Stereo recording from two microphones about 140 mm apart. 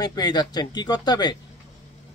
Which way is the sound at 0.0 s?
30° left (ahead or behind).